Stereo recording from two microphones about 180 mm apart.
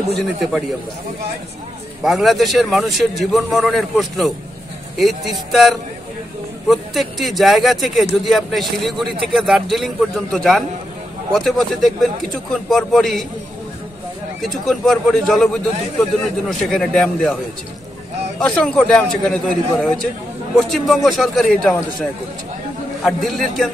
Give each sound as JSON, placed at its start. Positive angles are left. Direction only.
{"t": 0.4, "sound": "speech", "side_deg": 0}
{"t": 2.0, "sound": "speech", "side_deg": 0}
{"t": 14.4, "sound": "speech", "side_deg": 0}
{"t": 18.4, "sound": "speech", "side_deg": 5}
{"t": 23.0, "sound": "speech", "side_deg": 0}